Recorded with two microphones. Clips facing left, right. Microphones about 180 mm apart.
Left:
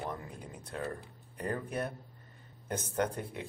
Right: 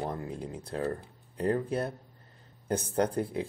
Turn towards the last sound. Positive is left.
turn(degrees=-35)  # may be behind; listen again after turning